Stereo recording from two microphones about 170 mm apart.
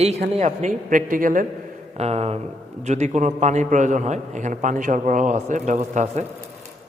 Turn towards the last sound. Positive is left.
turn(degrees=-40)  # may be behind; listen again after turning